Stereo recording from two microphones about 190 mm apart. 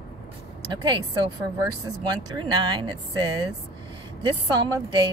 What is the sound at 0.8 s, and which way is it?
Speech, 25° right (ahead or behind).